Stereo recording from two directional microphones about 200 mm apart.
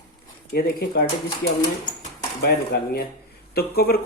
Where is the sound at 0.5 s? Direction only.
50° left (ahead or behind).